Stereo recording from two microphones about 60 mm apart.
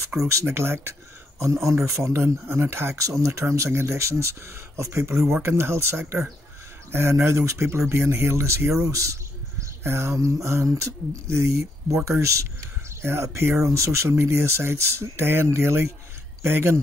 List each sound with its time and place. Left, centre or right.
0.3 s speech: right
1.4 s speech: right
2.2 s speech: right
8.9 s speech: right
13.0 s speech: right